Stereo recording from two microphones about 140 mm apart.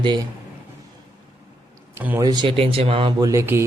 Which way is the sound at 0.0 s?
35° right (ahead or behind).